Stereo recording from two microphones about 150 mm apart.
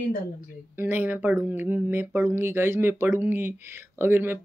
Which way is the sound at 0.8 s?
10° right (ahead or behind).